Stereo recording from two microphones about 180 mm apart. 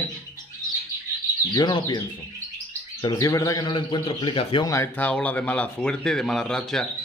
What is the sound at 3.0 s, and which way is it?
A man's voice, 20° left (ahead or behind).